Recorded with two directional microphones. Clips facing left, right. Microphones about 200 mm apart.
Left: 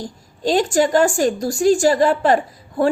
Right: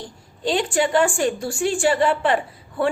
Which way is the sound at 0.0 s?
40° left (ahead or behind).